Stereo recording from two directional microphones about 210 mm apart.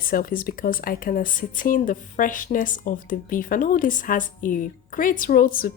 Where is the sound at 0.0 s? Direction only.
45° left (ahead or behind).